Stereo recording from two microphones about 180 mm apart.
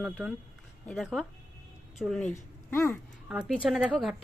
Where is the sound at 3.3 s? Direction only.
5° right (ahead or behind).